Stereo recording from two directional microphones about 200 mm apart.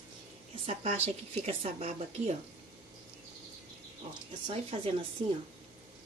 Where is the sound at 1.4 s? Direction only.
30° right (ahead or behind).